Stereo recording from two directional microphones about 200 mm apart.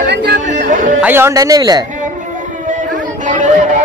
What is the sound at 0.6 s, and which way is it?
Music, 40° right (ahead or behind).